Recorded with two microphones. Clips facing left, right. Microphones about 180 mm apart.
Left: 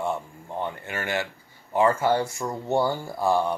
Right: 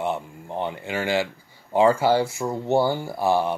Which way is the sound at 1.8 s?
10° right (ahead or behind).